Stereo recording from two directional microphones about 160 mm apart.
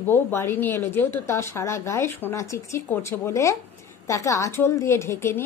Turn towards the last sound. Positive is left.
turn(degrees=15)  # may be behind; listen again after turning